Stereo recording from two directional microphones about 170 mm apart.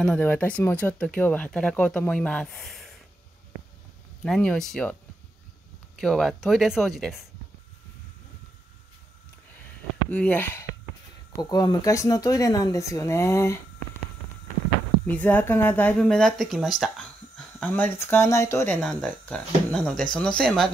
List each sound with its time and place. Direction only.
0.0 s speech: 5° left (ahead or behind)
4.2 s speech: 5° left (ahead or behind)
5.9 s speech: centre (ahead or behind)
10.0 s speech: 10° left (ahead or behind)
11.3 s speech: 25° left (ahead or behind)
15.0 s speech: 10° left (ahead or behind)
17.6 s speech: 10° left (ahead or behind)
18.8 s speech: 5° left (ahead or behind)